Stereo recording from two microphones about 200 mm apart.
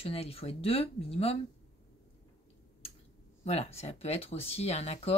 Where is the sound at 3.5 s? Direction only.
30° left (ahead or behind).